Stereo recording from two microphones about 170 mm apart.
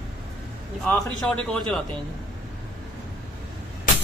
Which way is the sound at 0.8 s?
5° left (ahead or behind).